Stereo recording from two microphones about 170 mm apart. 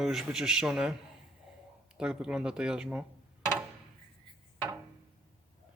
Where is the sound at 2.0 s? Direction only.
5° right (ahead or behind).